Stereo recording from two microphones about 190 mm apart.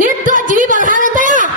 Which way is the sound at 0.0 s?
45° right (ahead or behind).